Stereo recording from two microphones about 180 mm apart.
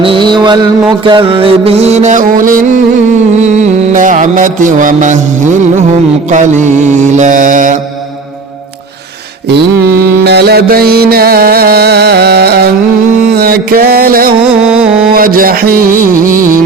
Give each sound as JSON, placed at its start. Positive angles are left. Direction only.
{"t": 0.0, "sound": "mantra", "side_deg": -25}
{"t": 3.4, "sound": "music", "side_deg": -40}
{"t": 6.3, "sound": "mantra", "side_deg": -40}
{"t": 9.5, "sound": "mantra", "side_deg": -65}
{"t": 13.4, "sound": "music", "side_deg": -55}
{"t": 15.1, "sound": "speech", "side_deg": -55}